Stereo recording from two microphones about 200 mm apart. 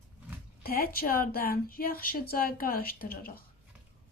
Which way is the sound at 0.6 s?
50° left (ahead or behind).